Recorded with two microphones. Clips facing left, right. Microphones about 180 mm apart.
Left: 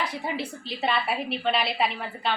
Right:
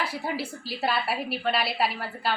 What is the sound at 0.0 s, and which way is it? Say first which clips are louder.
A woman's voice: even; 5° right (ahead or behind).